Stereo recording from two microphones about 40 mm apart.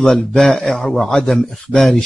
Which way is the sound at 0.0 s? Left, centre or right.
Centre.